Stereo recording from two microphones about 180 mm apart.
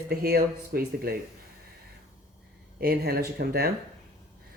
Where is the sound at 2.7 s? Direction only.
60° right (ahead or behind).